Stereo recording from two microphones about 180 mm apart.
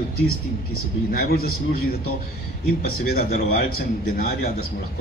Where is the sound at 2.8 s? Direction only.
55° left (ahead or behind).